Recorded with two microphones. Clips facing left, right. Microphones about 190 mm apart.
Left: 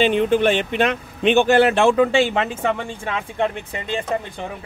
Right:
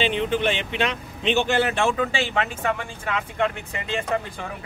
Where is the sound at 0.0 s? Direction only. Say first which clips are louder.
Left 6 dB; 45° left (ahead or behind); by 2.0 s 70° left (ahead or behind).